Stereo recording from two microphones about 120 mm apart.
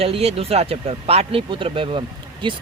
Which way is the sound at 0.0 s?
55° right (ahead or behind).